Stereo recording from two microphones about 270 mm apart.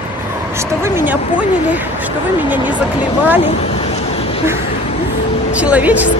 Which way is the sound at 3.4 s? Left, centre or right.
Left.